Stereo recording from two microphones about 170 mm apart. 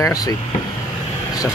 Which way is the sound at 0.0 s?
20° left (ahead or behind).